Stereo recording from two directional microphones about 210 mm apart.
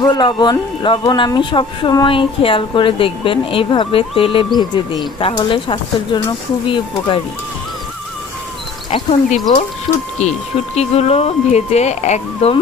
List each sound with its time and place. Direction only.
0.0 s speech: 20° left (ahead or behind)
8.9 s speech: 20° left (ahead or behind)